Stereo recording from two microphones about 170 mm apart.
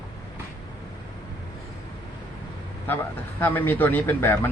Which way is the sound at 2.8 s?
10° left (ahead or behind).